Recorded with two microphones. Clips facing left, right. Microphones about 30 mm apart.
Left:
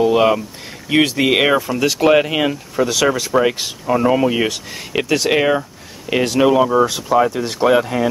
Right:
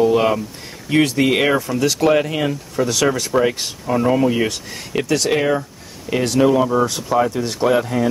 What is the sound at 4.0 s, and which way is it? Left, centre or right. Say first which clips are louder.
Speech: even; centre.